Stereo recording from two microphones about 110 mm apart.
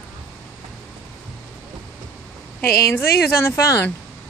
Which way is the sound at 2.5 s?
20° left (ahead or behind).